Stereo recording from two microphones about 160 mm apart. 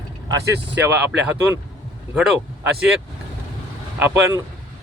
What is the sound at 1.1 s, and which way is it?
Speech, 10° right (ahead or behind).